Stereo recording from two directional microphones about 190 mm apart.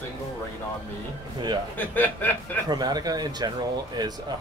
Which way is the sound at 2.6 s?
20° right (ahead or behind).